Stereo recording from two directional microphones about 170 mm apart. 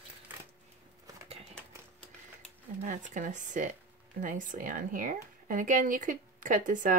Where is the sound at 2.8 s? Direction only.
45° right (ahead or behind).